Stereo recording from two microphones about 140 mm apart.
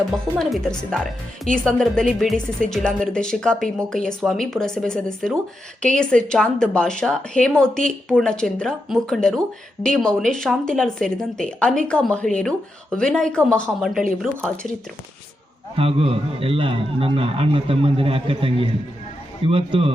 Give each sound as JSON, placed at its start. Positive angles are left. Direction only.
{"t": 0.3, "sound": "a woman's voice", "side_deg": 5}
{"t": 15.7, "sound": "a man's voice", "side_deg": -40}